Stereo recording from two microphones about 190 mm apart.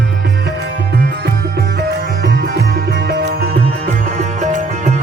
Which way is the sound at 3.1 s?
55° right (ahead or behind).